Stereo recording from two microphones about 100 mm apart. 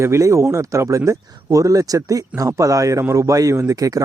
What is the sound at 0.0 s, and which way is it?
Speech, 30° right (ahead or behind).